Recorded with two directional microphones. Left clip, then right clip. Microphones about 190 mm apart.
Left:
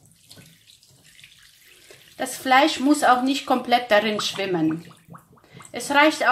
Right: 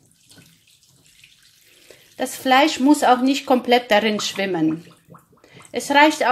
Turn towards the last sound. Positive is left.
turn(degrees=-30)  # may be behind; listen again after turning